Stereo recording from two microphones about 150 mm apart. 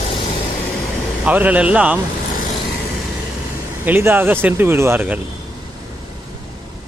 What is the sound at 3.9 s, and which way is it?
Speech, 10° right (ahead or behind).